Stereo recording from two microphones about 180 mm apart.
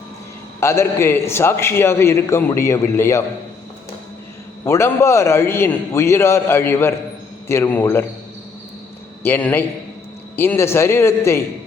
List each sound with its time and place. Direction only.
0.6 s a man's voice: 15° left (ahead or behind)
4.6 s a man's voice: 15° left (ahead or behind)
9.2 s a man's voice: 10° left (ahead or behind)